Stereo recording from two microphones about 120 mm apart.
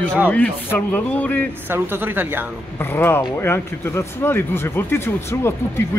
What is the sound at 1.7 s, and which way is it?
Speech, 20° right (ahead or behind).